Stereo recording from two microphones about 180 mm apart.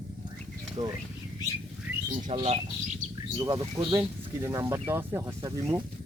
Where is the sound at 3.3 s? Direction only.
20° right (ahead or behind).